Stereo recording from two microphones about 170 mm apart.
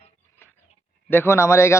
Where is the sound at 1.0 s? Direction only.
15° left (ahead or behind).